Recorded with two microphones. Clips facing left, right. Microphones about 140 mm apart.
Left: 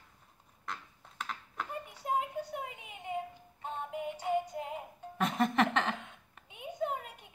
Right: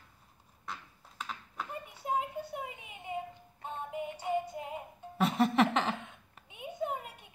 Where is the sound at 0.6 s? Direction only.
Centre (ahead or behind).